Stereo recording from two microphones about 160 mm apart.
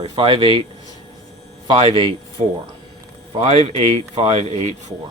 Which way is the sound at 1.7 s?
35° right (ahead or behind).